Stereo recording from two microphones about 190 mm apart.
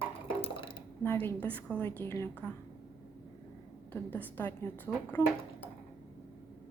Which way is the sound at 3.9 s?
10° left (ahead or behind).